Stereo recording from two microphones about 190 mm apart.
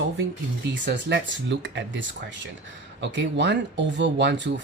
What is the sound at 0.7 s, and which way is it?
Speech, 65° right (ahead or behind).